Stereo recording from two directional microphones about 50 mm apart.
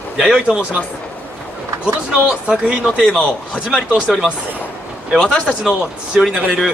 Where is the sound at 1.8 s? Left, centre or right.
Right.